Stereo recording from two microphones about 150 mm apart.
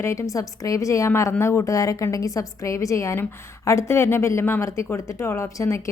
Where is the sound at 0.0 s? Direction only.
20° left (ahead or behind).